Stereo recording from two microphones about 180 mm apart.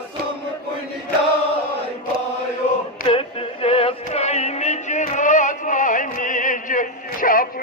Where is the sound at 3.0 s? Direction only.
30° left (ahead or behind).